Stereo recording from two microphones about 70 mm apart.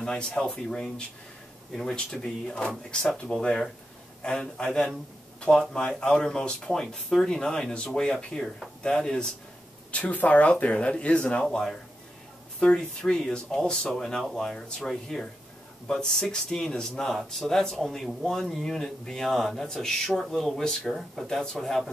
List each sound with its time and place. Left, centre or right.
0.0 s speech: centre